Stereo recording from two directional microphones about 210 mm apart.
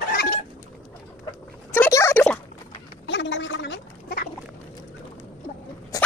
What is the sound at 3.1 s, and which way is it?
Gargling, 55° left (ahead or behind).